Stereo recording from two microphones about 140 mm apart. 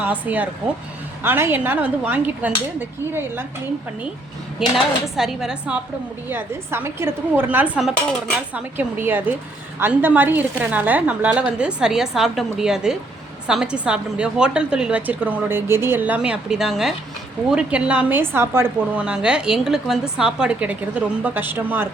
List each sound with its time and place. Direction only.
0.0 s a woman's voice: 10° right (ahead or behind)
4.6 s a woman's voice: 5° right (ahead or behind)